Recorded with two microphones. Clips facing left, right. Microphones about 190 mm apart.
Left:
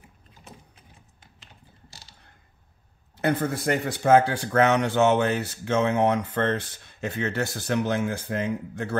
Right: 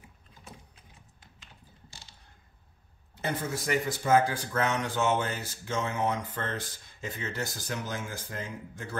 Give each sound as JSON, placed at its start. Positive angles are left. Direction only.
{"t": 3.2, "sound": "speech", "side_deg": 60}